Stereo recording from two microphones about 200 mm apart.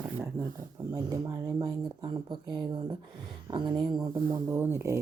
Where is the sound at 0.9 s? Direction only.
15° right (ahead or behind).